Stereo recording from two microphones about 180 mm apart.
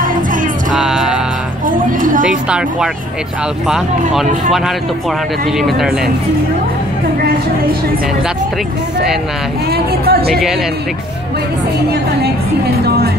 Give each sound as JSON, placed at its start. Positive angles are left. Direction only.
{"t": 0.0, "sound": "music", "side_deg": -50}
{"t": 0.7, "sound": "music", "side_deg": -5}
{"t": 1.7, "sound": "a sound", "side_deg": -50}
{"t": 2.2, "sound": "speech", "side_deg": -5}
{"t": 9.7, "sound": "speech", "side_deg": -60}
{"t": 12.8, "sound": "music", "side_deg": -60}